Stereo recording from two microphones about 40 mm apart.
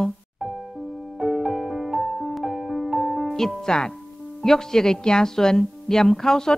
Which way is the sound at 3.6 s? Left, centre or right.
Centre.